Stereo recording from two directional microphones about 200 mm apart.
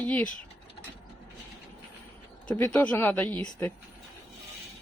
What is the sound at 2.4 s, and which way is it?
Speech, 5° left (ahead or behind).